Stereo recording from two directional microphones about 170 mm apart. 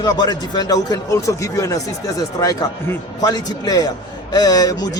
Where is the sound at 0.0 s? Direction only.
25° left (ahead or behind).